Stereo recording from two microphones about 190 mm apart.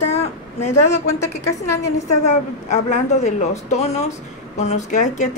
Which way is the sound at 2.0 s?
35° left (ahead or behind).